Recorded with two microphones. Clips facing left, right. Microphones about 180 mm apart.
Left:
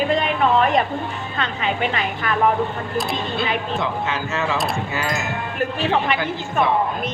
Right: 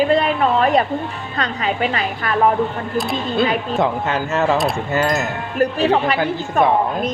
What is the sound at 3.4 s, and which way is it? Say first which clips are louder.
A woman's voice: right 8 dB; 40° right (ahead or behind).